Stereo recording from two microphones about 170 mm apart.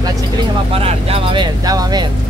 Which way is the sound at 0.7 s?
35° right (ahead or behind).